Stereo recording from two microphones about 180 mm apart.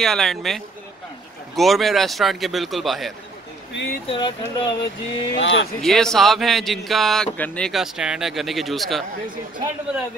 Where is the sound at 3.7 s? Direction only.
75° left (ahead or behind).